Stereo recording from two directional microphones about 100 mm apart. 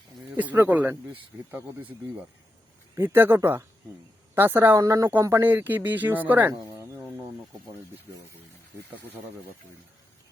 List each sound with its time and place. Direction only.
0.3 s speech: 20° right (ahead or behind)
4.8 s speech: 35° right (ahead or behind)
5.2 s speech: 25° right (ahead or behind)